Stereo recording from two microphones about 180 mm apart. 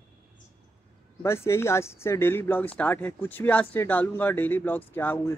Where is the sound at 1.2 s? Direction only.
15° left (ahead or behind).